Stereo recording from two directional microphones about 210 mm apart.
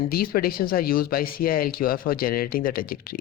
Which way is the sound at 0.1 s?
45° left (ahead or behind).